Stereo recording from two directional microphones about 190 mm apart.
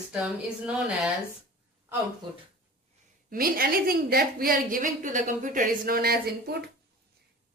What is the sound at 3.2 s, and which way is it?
A woman's voice, 50° right (ahead or behind).